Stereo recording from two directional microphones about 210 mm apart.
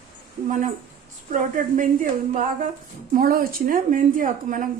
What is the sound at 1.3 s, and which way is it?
A woman's voice, 40° right (ahead or behind).